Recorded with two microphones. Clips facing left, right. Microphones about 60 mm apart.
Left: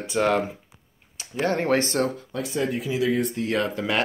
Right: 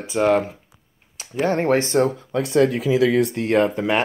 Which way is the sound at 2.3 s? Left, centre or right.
Right.